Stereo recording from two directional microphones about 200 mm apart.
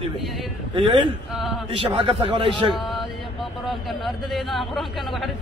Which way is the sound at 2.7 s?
Centre (ahead or behind).